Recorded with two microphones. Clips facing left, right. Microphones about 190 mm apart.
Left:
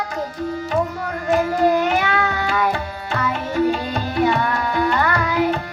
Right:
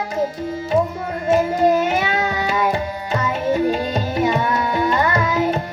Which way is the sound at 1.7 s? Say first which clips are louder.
Even; 20° right (ahead or behind).